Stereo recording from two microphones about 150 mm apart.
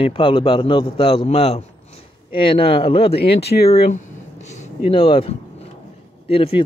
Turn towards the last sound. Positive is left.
turn(degrees=40)  # may be behind; listen again after turning